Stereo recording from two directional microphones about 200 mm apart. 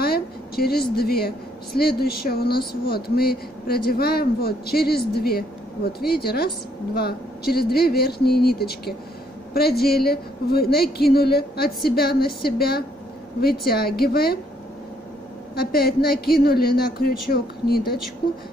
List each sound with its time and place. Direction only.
0.0 s a sound: 50° left (ahead or behind)
1.8 s speech: 50° left (ahead or behind)
15.5 s speech: 50° left (ahead or behind)